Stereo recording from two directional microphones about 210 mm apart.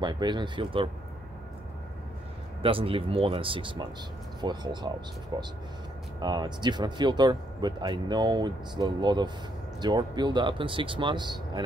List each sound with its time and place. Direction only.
0.0 s speech: 20° right (ahead or behind)
2.6 s speech: 25° right (ahead or behind)